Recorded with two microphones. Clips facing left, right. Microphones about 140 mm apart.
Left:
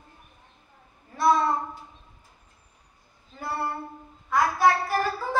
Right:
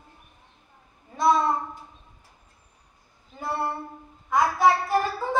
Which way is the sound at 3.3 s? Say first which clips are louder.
Right 2 dB; 20° right (ahead or behind).